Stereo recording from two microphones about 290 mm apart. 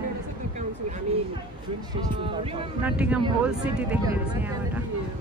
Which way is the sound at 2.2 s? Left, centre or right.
Centre.